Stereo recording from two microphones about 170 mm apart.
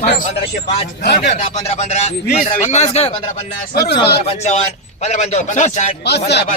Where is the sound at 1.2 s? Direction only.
40° left (ahead or behind).